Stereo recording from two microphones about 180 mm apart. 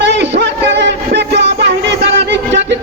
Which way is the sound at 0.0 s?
75° right (ahead or behind).